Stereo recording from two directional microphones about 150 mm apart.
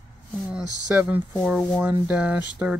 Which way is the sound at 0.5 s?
5° right (ahead or behind).